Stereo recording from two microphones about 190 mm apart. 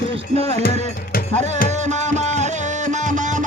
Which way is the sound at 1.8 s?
40° right (ahead or behind).